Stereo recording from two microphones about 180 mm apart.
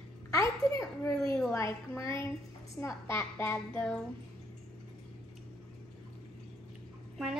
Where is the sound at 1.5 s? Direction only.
15° left (ahead or behind).